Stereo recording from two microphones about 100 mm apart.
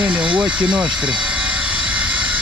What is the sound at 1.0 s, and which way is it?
Vehicle, 15° right (ahead or behind).